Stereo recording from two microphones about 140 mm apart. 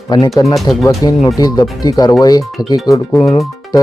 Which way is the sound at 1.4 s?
30° left (ahead or behind).